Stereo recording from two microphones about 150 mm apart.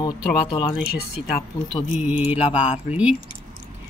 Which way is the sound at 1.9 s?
10° right (ahead or behind).